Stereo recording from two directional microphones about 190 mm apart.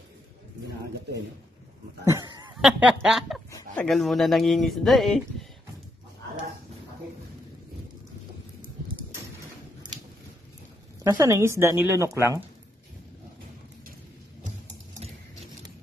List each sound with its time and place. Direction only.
2.0 s goat: 20° right (ahead or behind)
2.6 s speech: 5° right (ahead or behind)
11.1 s speech: 15° right (ahead or behind)